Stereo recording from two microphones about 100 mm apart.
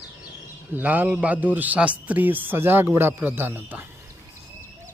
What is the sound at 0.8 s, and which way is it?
A man's voice, 15° right (ahead or behind).